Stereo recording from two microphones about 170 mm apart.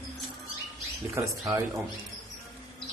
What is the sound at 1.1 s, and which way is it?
Speech, 20° right (ahead or behind).